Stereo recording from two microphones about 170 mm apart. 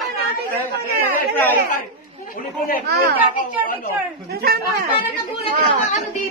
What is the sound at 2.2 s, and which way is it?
Speech, 55° left (ahead or behind).